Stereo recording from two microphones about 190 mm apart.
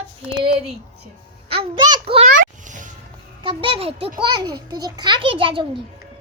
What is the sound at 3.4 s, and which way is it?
A child's voice, 25° right (ahead or behind).